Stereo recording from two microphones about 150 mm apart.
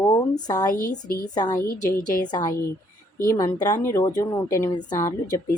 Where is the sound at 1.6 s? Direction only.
75° left (ahead or behind).